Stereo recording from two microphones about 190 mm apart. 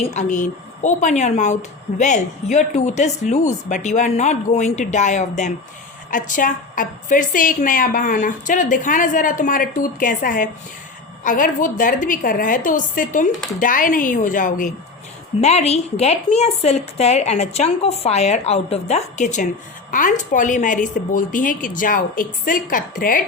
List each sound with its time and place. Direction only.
0.1 s a woman's voice: 40° left (ahead or behind)